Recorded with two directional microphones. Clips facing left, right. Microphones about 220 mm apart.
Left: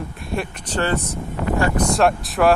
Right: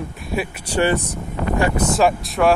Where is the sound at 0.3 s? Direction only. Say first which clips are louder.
Right 2 dB; 10° right (ahead or behind).